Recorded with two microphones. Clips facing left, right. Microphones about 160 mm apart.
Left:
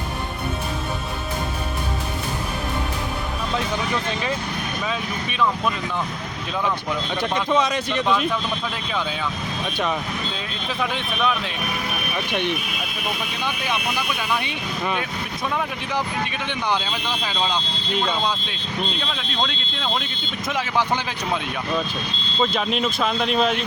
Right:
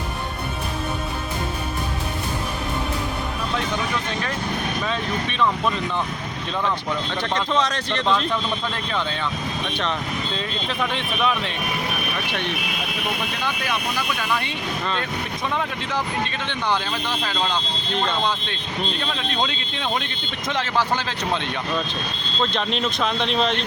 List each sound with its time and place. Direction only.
4.9 s speech: 5° left (ahead or behind)
7.2 s speech: 10° left (ahead or behind)
10.3 s speech: centre (ahead or behind)
12.3 s speech: 15° left (ahead or behind)
14.2 s speech: 10° left (ahead or behind)
16.2 s speech: 10° left (ahead or behind)
20.5 s speech: 10° left (ahead or behind)
22.4 s speech: 5° left (ahead or behind)